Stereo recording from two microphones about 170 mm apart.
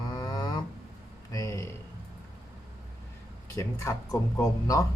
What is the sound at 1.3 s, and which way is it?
Speech, 20° left (ahead or behind).